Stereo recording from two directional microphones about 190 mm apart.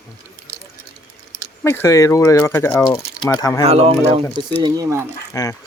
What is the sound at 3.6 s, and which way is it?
Speech, 30° right (ahead or behind).